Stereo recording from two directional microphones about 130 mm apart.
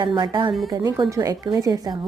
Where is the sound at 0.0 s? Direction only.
35° right (ahead or behind).